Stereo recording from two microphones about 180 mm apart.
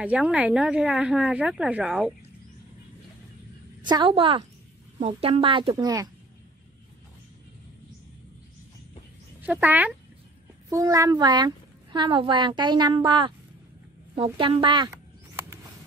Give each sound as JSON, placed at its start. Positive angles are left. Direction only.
{"t": 0.0, "sound": "a woman's voice", "side_deg": -5}
{"t": 3.9, "sound": "a child's voice", "side_deg": -30}
{"t": 9.5, "sound": "a woman's voice", "side_deg": -10}
{"t": 14.9, "sound": "a sound", "side_deg": -15}